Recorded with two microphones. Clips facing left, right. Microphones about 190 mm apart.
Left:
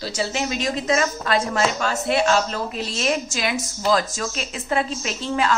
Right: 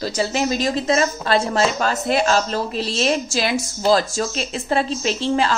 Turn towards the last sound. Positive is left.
turn(degrees=-30)  # may be behind; listen again after turning